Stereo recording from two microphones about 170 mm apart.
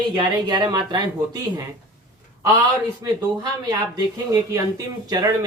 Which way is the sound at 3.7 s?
20° right (ahead or behind).